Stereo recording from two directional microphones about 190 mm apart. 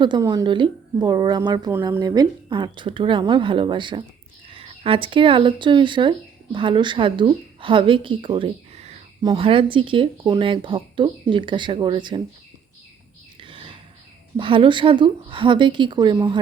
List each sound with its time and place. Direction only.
0.0 s speech: 20° right (ahead or behind)
13.4 s whispering: 25° right (ahead or behind)
14.3 s speech: 25° right (ahead or behind)